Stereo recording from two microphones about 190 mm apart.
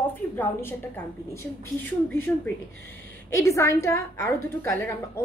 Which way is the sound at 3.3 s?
15° left (ahead or behind).